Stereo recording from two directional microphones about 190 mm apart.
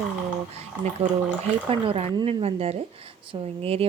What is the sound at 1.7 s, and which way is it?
A woman's voice, 30° right (ahead or behind).